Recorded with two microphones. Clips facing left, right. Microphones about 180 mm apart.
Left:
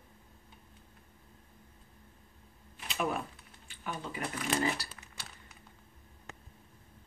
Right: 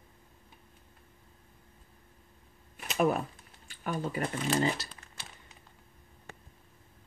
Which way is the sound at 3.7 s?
40° right (ahead or behind).